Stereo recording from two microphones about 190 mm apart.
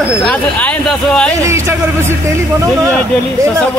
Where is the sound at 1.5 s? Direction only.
15° right (ahead or behind).